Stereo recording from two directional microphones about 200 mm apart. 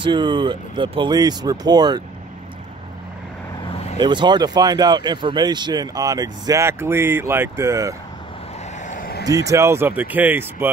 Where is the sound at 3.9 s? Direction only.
25° right (ahead or behind).